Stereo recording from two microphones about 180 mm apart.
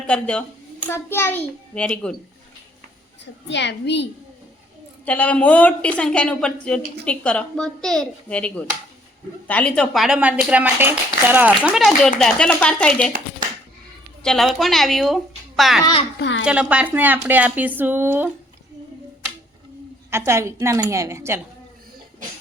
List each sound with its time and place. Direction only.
0.1 s a woman's voice: 5° left (ahead or behind)
3.5 s a woman's voice: 75° left (ahead or behind)
5.0 s a woman's voice: 10° left (ahead or behind)
14.2 s a child's voice: 5° left (ahead or behind)
20.1 s speech: 15° right (ahead or behind)